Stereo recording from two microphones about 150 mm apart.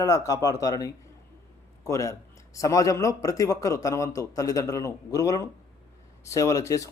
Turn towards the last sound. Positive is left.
turn(degrees=20)  # may be behind; listen again after turning